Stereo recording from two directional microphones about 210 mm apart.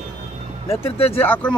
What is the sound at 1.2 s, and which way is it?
Speech, 5° left (ahead or behind).